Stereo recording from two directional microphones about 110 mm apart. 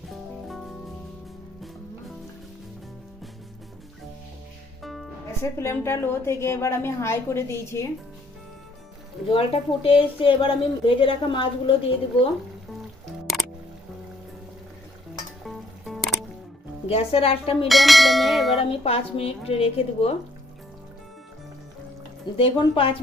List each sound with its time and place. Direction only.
0.1 s music: centre (ahead or behind)
4.8 s music: centre (ahead or behind)
5.4 s a woman's voice: 25° left (ahead or behind)
9.2 s a woman's voice: 55° left (ahead or behind)
15.4 s music: centre (ahead or behind)
16.9 s a woman's voice: 65° left (ahead or behind)
17.7 s church bell: centre (ahead or behind)
18.6 s a woman's voice: 60° left (ahead or behind)
22.4 s a woman's voice: 55° left (ahead or behind)